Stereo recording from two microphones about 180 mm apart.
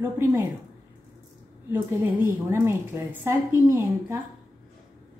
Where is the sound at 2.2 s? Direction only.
15° right (ahead or behind).